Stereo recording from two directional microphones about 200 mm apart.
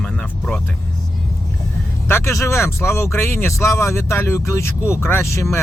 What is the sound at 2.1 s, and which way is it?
Speech, 15° left (ahead or behind).